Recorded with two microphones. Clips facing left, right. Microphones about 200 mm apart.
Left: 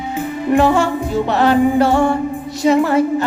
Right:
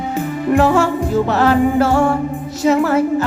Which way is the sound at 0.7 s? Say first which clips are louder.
Right 2 dB; 5° right (ahead or behind).